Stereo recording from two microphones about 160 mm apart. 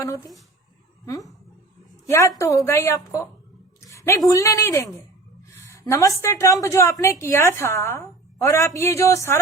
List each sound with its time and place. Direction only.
0.0 s a woman's voice: 20° left (ahead or behind)
3.8 s a sound: 20° left (ahead or behind)
4.3 s a woman's voice: 20° left (ahead or behind)